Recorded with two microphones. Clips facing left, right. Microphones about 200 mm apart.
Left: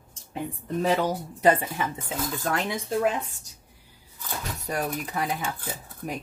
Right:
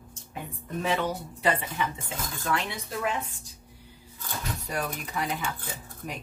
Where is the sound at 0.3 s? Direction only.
35° left (ahead or behind).